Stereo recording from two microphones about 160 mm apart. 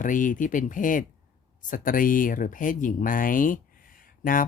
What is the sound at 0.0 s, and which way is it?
Speech, 55° left (ahead or behind).